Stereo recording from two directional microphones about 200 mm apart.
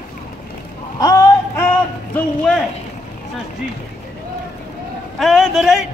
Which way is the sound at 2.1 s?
5° left (ahead or behind).